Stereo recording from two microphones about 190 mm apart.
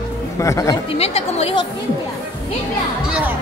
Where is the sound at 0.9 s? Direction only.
35° left (ahead or behind).